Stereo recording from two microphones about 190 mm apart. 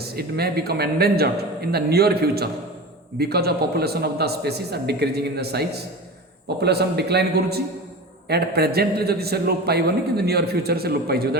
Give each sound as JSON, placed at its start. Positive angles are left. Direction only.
{"t": 0.0, "sound": "a man's voice", "side_deg": -55}